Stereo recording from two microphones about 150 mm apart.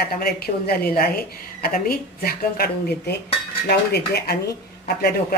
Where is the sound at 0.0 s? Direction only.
90° left.